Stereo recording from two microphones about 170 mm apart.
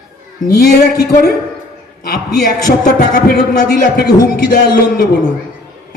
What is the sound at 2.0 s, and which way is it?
A man's voice, 60° left (ahead or behind).